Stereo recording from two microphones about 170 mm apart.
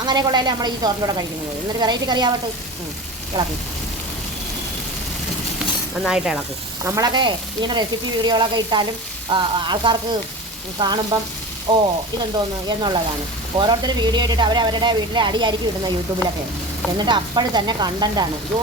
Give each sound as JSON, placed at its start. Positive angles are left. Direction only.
{"t": 0.0, "sound": "speech", "side_deg": -25}
{"t": 3.3, "sound": "speech", "side_deg": -25}
{"t": 6.1, "sound": "speech", "side_deg": -5}
{"t": 6.8, "sound": "speech", "side_deg": -20}
{"t": 17.1, "sound": "speech", "side_deg": -25}